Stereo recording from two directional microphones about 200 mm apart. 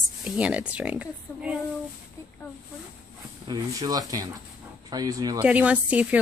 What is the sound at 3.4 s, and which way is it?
Speech, 20° right (ahead or behind).